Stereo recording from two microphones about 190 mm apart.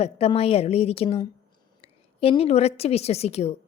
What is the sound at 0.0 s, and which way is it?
A woman's voice, 30° left (ahead or behind).